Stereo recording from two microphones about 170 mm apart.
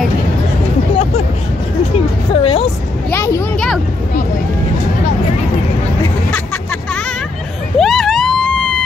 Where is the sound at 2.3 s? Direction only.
30° left (ahead or behind).